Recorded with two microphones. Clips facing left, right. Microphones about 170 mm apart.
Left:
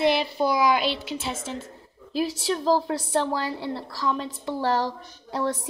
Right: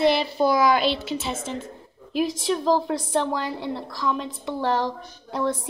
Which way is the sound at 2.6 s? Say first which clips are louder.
Even; 35° left (ahead or behind).